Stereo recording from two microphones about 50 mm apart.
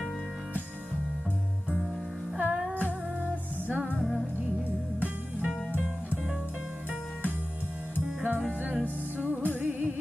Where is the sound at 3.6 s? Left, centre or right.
Right.